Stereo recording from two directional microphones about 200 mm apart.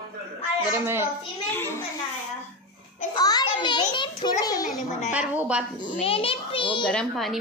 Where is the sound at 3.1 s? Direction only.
20° left (ahead or behind).